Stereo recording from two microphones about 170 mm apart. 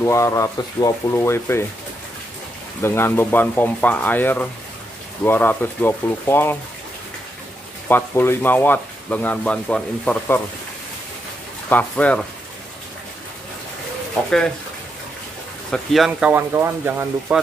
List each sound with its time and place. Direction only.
0.0 s speech: 15° left (ahead or behind)
2.8 s speech: 15° left (ahead or behind)
7.9 s speech: 15° left (ahead or behind)
11.7 s speech: 5° left (ahead or behind)
14.2 s speech: 5° left (ahead or behind)
15.7 s speech: centre (ahead or behind)